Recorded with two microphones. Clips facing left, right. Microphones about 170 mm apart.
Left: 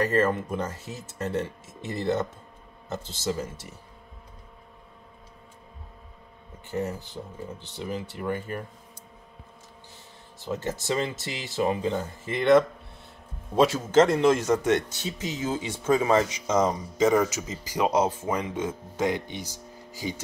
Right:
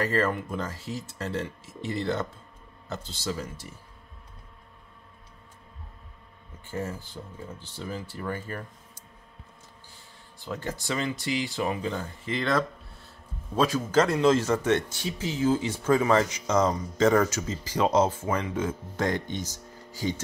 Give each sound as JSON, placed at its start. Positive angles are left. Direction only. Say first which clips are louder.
{"t": 0.1, "sound": "speech", "louder": "left 3 dB", "side_deg": 20}
{"t": 6.7, "sound": "speech", "louder": "left 3 dB", "side_deg": 20}
{"t": 10.4, "sound": "speech", "louder": "left 3 dB", "side_deg": 20}